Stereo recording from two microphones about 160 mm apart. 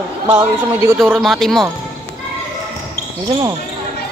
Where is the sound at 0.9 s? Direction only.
Centre (ahead or behind).